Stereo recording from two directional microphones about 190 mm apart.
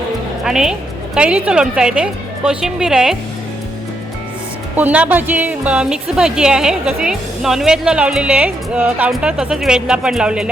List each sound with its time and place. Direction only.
0.4 s a woman's voice: 5° right (ahead or behind)
4.8 s a woman's voice: 10° right (ahead or behind)